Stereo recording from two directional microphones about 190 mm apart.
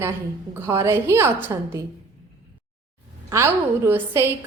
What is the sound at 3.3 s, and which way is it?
A woman's voice, 15° right (ahead or behind).